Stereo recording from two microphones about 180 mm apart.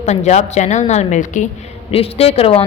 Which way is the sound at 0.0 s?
40° left (ahead or behind).